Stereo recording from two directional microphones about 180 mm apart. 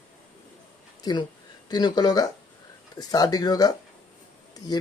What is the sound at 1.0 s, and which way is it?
Speech, 20° left (ahead or behind).